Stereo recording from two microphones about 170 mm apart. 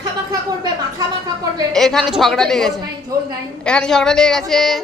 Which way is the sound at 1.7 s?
Centre (ahead or behind).